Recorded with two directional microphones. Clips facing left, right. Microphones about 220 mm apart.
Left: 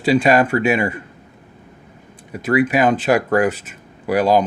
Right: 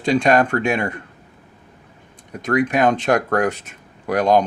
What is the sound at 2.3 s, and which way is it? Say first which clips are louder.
Speech: left 2 dB; 5° left (ahead or behind).